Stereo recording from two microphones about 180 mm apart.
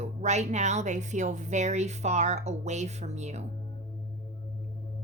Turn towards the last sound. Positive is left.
turn(degrees=-40)  # may be behind; listen again after turning